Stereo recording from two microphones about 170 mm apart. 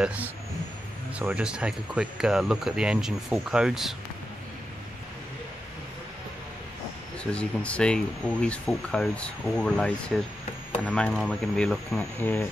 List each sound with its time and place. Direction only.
0.0 s a man's voice: 10° right (ahead or behind)
7.3 s speech: 5° left (ahead or behind)